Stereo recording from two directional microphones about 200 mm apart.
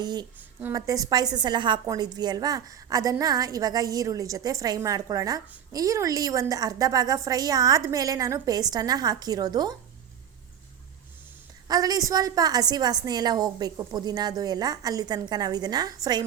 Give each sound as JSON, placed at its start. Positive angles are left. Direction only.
{"t": 0.0, "sound": "a woman's voice", "side_deg": -20}
{"t": 11.7, "sound": "a woman's voice", "side_deg": -20}